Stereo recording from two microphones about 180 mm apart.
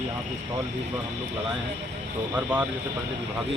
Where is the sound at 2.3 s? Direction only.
10° right (ahead or behind).